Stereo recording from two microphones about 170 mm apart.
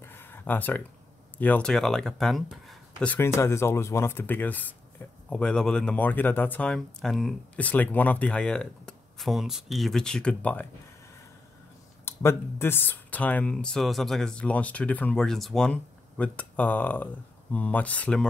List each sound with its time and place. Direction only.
0.0 s a sound: 15° left (ahead or behind)
1.4 s speech: 10° left (ahead or behind)
12.0 s speech: 15° left (ahead or behind)